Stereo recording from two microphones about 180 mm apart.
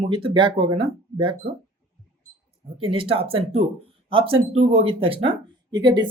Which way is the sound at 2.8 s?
30° right (ahead or behind).